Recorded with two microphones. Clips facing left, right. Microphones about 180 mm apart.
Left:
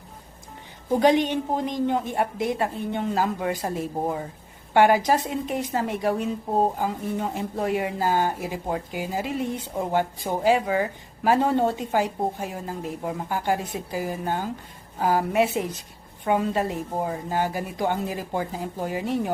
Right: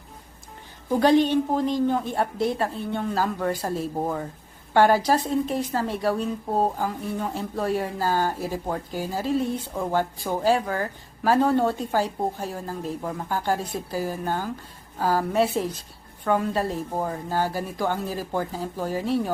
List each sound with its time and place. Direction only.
0.9 s a woman's voice: 20° left (ahead or behind)